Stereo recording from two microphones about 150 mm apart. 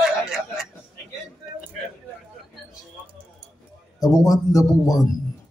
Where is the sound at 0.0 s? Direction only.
5° right (ahead or behind).